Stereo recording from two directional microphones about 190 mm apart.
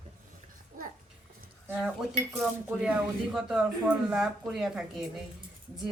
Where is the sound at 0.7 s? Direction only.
50° right (ahead or behind).